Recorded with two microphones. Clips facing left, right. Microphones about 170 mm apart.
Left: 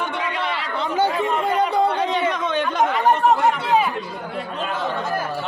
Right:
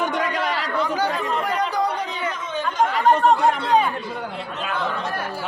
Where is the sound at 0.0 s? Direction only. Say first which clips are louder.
Right 2 dB; 40° right (ahead or behind).